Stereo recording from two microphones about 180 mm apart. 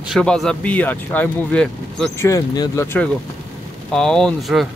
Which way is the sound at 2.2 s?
20° left (ahead or behind).